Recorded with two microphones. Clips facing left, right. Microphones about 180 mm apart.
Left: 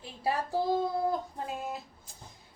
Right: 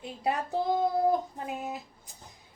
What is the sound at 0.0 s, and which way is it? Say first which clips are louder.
A woman's voice: right 1 dB; 20° right (ahead or behind).